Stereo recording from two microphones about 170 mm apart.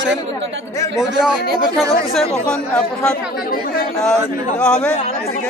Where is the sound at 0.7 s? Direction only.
15° left (ahead or behind).